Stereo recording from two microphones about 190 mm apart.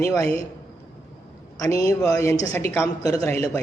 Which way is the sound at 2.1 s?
15° left (ahead or behind).